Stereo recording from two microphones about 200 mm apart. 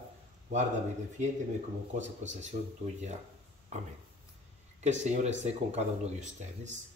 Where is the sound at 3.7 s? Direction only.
35° right (ahead or behind).